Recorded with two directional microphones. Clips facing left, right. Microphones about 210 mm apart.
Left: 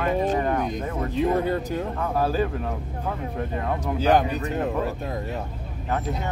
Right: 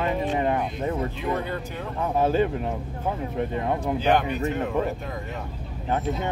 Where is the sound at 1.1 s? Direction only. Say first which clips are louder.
Left 6 dB; 40° left (ahead or behind).